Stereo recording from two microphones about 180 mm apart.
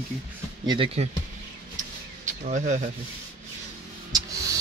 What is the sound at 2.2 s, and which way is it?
Speech, 40° right (ahead or behind).